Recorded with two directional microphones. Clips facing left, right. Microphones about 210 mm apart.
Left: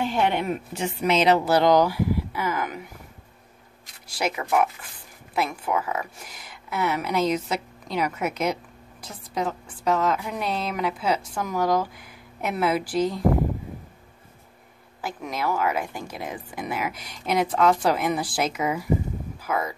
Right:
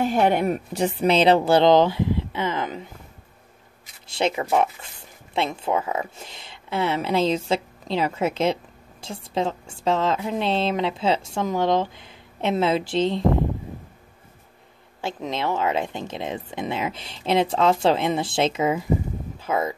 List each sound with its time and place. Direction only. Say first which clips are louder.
0.0 s a woman's voice: right 4 dB; 45° right (ahead or behind); by 2.9 s 25° right (ahead or behind)
4.1 s a woman's voice: right 3 dB; 25° right (ahead or behind)
15.0 s a woman's voice: right 3 dB; 25° right (ahead or behind)